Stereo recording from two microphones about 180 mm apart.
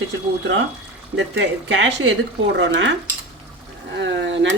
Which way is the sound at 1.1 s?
90° right.